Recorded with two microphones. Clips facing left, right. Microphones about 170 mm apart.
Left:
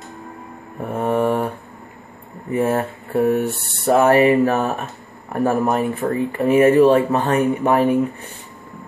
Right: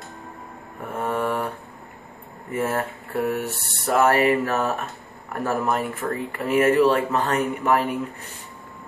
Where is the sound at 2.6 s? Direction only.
30° left (ahead or behind).